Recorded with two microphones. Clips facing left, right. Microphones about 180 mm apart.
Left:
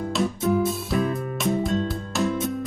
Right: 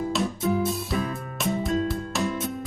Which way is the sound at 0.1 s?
Centre (ahead or behind).